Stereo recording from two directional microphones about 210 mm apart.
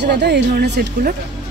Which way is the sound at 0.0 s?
55° right (ahead or behind).